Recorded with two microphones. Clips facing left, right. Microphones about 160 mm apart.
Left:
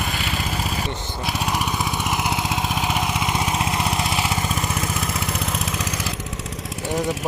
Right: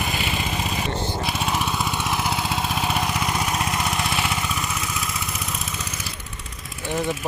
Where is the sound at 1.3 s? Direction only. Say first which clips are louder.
Left 5 dB; 10° left (ahead or behind); by 4.6 s 30° left (ahead or behind).